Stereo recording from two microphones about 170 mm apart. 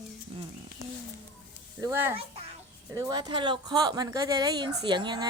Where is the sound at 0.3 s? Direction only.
35° right (ahead or behind).